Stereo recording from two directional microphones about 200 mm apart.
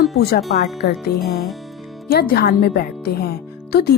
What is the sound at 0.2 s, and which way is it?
Speech, 50° left (ahead or behind).